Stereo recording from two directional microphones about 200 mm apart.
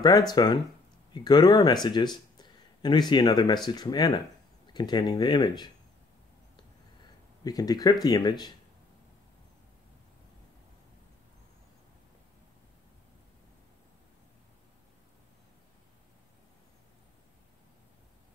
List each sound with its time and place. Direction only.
0.0 s speech: 20° left (ahead or behind)
7.4 s speech: 20° left (ahead or behind)